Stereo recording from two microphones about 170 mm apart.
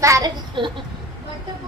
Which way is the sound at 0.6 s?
30° right (ahead or behind).